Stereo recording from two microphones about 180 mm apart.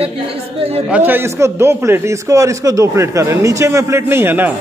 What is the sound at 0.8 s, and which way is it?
A man's voice, 10° right (ahead or behind).